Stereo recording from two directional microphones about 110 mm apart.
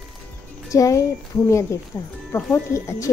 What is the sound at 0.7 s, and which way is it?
A child's voice, 30° left (ahead or behind).